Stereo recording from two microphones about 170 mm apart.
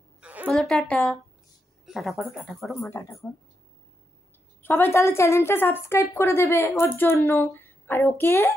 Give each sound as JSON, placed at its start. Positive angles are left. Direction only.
{"t": 0.2, "sound": "a sound", "side_deg": -10}
{"t": 0.5, "sound": "speech", "side_deg": 0}
{"t": 2.9, "sound": "a woman's voice", "side_deg": 15}
{"t": 4.6, "sound": "a woman's voice", "side_deg": 10}